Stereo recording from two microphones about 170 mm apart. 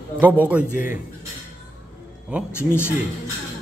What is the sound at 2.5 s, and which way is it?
Speech, 15° left (ahead or behind).